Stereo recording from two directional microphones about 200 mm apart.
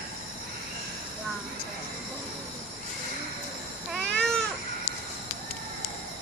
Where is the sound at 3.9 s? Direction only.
5° left (ahead or behind).